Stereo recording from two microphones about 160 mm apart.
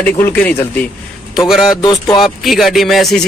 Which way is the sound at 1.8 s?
25° left (ahead or behind).